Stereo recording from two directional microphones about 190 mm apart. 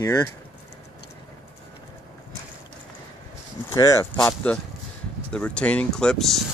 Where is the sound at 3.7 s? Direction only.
15° left (ahead or behind).